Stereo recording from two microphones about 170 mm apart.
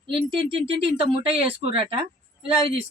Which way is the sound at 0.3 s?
30° right (ahead or behind).